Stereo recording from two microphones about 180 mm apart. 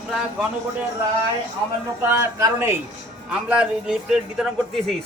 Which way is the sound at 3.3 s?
5° right (ahead or behind).